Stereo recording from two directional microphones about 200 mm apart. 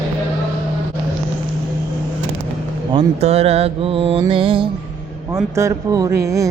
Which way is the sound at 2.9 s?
25° right (ahead or behind).